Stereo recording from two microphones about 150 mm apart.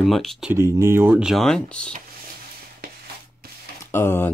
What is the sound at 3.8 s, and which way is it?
Speech, 15° left (ahead or behind).